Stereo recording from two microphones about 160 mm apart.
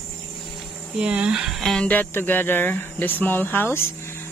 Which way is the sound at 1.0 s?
5° right (ahead or behind).